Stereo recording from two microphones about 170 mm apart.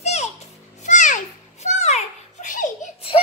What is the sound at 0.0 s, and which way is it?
Music, 40° left (ahead or behind).